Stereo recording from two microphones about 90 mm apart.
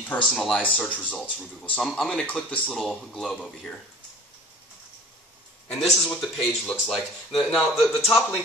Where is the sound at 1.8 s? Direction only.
5° left (ahead or behind).